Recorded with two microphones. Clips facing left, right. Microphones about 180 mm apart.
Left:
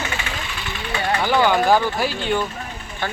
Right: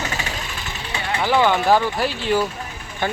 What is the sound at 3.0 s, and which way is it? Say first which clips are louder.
Speech: right 4 dB; 15° right (ahead or behind).